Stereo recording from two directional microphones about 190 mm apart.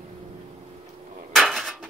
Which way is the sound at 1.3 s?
Centre (ahead or behind).